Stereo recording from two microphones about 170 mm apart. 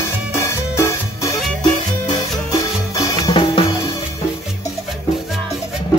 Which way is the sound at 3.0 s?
25° left (ahead or behind).